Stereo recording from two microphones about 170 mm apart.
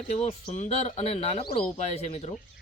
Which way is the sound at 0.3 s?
40° left (ahead or behind).